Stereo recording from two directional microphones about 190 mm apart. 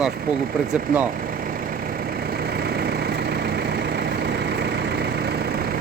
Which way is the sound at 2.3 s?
55° right (ahead or behind).